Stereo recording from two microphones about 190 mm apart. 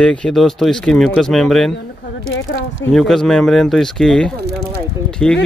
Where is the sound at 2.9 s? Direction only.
Centre (ahead or behind).